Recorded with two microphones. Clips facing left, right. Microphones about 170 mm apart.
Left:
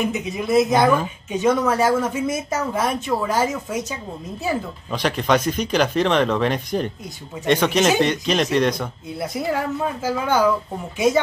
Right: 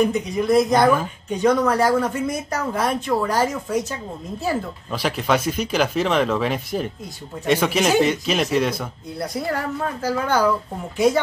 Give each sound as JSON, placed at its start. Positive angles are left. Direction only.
{"t": 0.0, "sound": "speech", "side_deg": 5}